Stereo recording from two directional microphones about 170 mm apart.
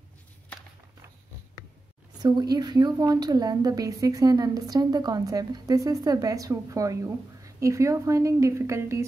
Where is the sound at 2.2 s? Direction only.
25° right (ahead or behind).